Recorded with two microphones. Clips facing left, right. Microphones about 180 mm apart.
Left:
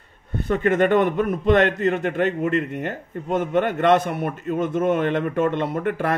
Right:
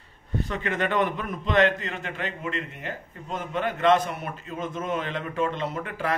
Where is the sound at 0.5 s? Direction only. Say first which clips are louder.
Left 11 dB; 50° left (ahead or behind).